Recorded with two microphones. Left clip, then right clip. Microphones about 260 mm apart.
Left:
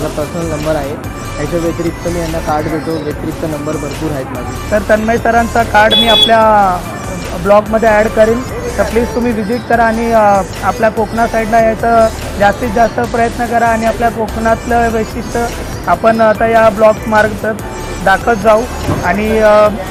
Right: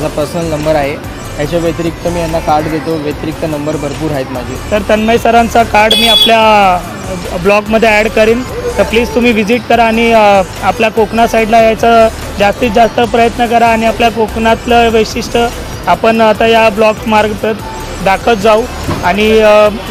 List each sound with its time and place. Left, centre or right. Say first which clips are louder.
4.7 s speech: right 2 dB; right